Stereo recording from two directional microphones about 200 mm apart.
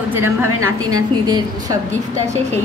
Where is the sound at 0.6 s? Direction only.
90° right.